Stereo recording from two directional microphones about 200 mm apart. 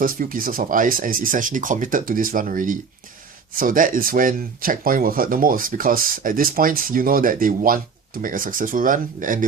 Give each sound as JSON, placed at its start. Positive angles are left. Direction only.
{"t": 0.0, "sound": "speech", "side_deg": -45}